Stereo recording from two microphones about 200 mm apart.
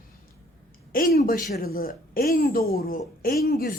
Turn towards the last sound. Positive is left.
turn(degrees=50)  # may be behind; listen again after turning